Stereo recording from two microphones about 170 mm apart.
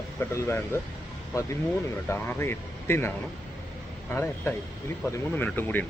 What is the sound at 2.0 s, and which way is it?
Speech, 10° left (ahead or behind).